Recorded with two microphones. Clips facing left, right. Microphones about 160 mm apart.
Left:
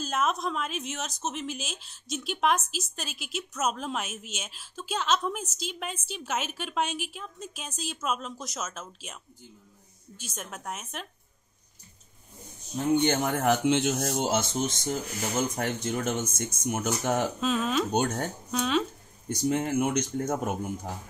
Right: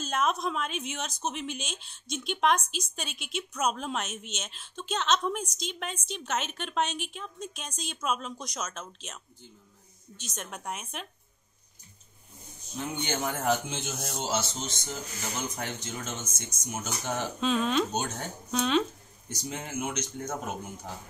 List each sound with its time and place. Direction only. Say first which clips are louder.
0.0 s speech: even; centre (ahead or behind)
13.0 s speech: left 5 dB; 60° left (ahead or behind)
17.4 s speech: even; 5° left (ahead or behind)
17.9 s speech: left 6 dB; 55° left (ahead or behind)
18.5 s speech: right 1 dB; centre (ahead or behind)
19.2 s speech: left 11 dB; 55° left (ahead or behind)